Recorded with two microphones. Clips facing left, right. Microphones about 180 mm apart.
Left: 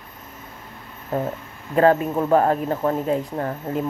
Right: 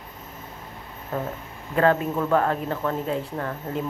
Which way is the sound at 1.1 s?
30° left (ahead or behind).